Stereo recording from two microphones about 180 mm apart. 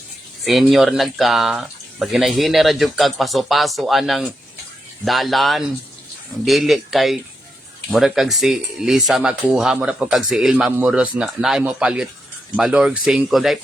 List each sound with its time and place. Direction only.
0.4 s speech: centre (ahead or behind)